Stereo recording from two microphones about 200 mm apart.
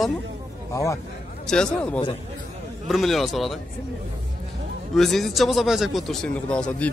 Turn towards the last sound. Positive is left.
turn(degrees=5)  # may be behind; listen again after turning